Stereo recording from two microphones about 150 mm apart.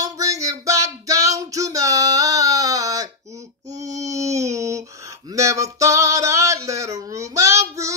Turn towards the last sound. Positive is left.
turn(degrees=-20)  # may be behind; listen again after turning